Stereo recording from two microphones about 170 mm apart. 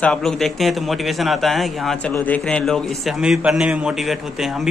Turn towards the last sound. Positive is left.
turn(degrees=0)  # may be behind; listen again after turning